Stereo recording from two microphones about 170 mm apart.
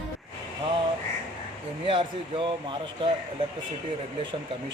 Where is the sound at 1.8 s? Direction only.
30° right (ahead or behind).